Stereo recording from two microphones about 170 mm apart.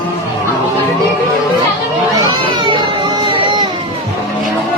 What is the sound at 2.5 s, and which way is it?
Children playing, 30° right (ahead or behind).